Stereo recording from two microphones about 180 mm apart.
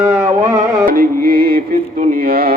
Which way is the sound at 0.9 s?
55° right (ahead or behind).